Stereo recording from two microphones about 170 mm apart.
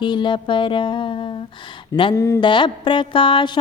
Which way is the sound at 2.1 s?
15° left (ahead or behind).